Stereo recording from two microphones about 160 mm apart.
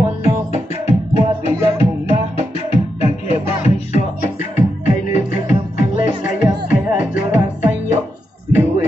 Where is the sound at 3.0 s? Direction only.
45° left (ahead or behind).